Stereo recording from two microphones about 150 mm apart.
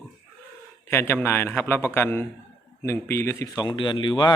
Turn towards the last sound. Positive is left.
turn(degrees=30)  # may be behind; listen again after turning